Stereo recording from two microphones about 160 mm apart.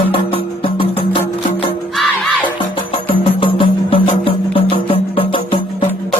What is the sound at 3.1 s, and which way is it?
Music, 35° left (ahead or behind).